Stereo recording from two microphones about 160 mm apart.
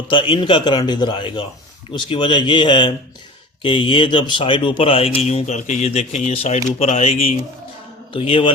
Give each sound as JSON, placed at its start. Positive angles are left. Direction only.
{"t": 0.1, "sound": "speech", "side_deg": 30}